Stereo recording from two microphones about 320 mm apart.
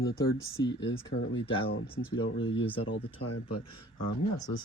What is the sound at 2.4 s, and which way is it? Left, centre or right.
Speech, centre.